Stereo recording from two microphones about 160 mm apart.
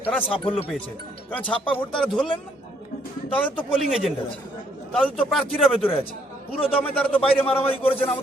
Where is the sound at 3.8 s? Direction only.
Centre (ahead or behind).